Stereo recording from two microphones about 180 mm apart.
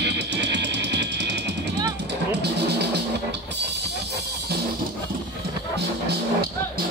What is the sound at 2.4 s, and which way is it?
Music, 70° right (ahead or behind).